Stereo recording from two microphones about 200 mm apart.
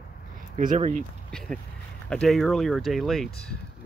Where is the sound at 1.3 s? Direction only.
5° left (ahead or behind).